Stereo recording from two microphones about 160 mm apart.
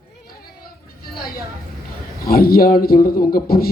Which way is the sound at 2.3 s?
70° left (ahead or behind).